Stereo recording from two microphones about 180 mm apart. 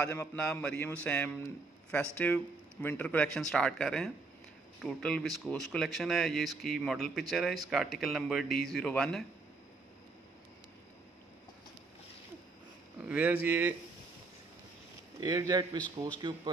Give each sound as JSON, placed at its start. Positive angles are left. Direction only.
{"t": 0.0, "sound": "speech", "side_deg": 10}
{"t": 13.1, "sound": "speech", "side_deg": -10}
{"t": 15.1, "sound": "a man's voice", "side_deg": -20}